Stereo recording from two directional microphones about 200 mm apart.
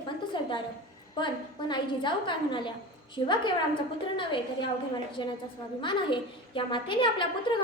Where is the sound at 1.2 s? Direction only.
25° left (ahead or behind).